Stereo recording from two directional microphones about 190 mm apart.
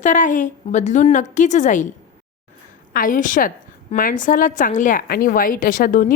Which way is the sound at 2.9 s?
45° left (ahead or behind).